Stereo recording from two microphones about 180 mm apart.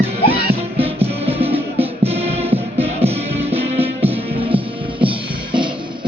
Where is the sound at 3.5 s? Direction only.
35° right (ahead or behind).